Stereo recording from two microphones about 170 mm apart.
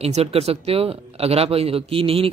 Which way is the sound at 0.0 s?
35° right (ahead or behind).